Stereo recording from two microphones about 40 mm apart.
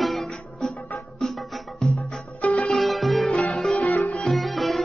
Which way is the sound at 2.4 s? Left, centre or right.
Left.